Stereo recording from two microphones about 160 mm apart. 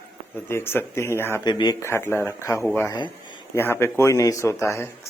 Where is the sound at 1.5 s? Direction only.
25° left (ahead or behind).